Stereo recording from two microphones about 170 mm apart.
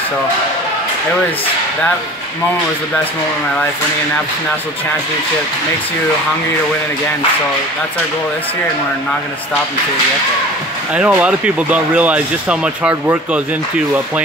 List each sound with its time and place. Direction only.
10.9 s speech: 10° right (ahead or behind)